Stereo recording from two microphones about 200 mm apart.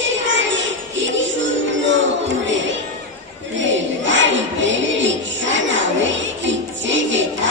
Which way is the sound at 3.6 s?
65° right (ahead or behind).